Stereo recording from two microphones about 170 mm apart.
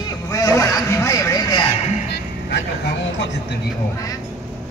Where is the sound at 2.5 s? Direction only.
90° left.